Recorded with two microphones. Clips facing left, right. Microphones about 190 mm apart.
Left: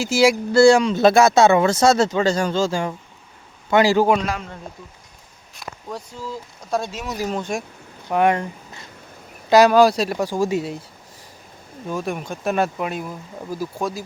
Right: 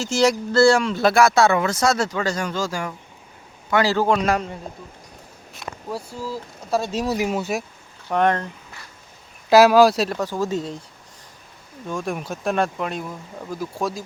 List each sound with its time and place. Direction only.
0.0 s speech: 10° left (ahead or behind)
5.5 s speech: 5° right (ahead or behind)
6.9 s speech: 35° right (ahead or behind)
7.2 s speech: 5° right (ahead or behind)
8.0 s speech: 10° left (ahead or behind)
9.5 s speech: centre (ahead or behind)
10.2 s speech: 10° left (ahead or behind)
11.9 s speech: 5° left (ahead or behind)